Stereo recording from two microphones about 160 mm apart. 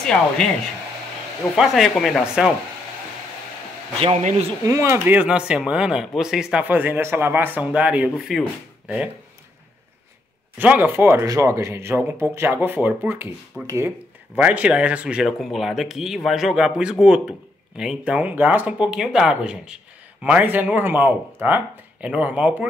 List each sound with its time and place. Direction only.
0.0 s a man's voice: 5° left (ahead or behind)
1.6 s a man's voice: centre (ahead or behind)
4.0 s a man's voice: 40° right (ahead or behind)
4.6 s speech: 20° right (ahead or behind)
10.6 s a man's voice: 10° right (ahead or behind)